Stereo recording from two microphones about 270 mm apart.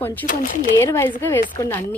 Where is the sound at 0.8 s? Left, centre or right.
Centre.